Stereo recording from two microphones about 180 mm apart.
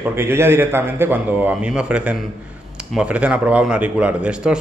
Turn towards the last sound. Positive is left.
turn(degrees=-5)  # may be behind; listen again after turning